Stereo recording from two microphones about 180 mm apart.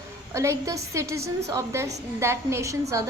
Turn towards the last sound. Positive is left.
turn(degrees=-15)  # may be behind; listen again after turning